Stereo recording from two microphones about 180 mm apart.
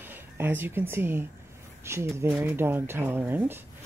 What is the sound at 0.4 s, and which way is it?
Speech, 10° right (ahead or behind).